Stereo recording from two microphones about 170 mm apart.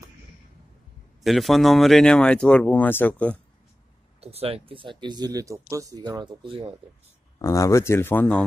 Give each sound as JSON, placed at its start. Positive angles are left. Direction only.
{"t": 1.2, "sound": "speech", "side_deg": 0}
{"t": 4.2, "sound": "speech", "side_deg": -35}
{"t": 7.3, "sound": "speech", "side_deg": 20}